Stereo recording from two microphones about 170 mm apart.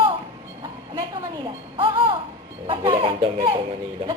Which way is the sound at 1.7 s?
30° right (ahead or behind).